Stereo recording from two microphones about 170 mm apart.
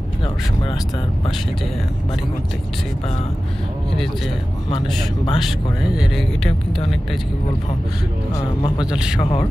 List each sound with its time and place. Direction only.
4.6 s speech: 35° left (ahead or behind)
5.4 s speech: 5° right (ahead or behind)
8.4 s speech: 25° left (ahead or behind)
8.9 s speech: 5° right (ahead or behind)
9.2 s speech: 30° left (ahead or behind)